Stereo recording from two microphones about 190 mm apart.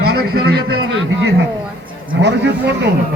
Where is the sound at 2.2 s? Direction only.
65° right (ahead or behind).